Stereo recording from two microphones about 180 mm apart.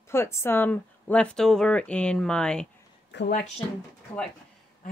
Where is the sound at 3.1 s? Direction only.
75° left (ahead or behind).